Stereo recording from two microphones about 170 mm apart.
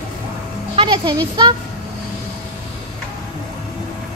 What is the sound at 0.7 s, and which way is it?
Speech, 30° right (ahead or behind).